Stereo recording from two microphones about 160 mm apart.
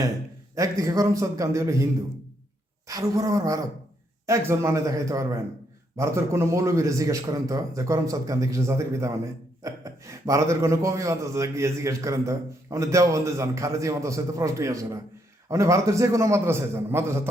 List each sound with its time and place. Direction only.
0.5 s a man's voice: 20° right (ahead or behind)